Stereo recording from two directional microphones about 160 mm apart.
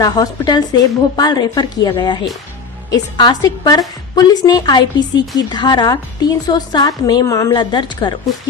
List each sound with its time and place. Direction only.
0.0 s a woman's voice: 25° left (ahead or behind)